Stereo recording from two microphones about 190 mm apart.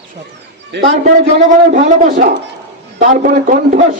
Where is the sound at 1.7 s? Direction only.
45° right (ahead or behind).